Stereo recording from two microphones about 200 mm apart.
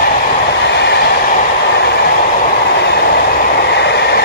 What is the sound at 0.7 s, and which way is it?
Train, 55° left (ahead or behind).